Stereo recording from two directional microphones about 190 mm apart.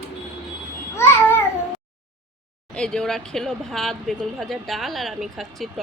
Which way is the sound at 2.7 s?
5° left (ahead or behind).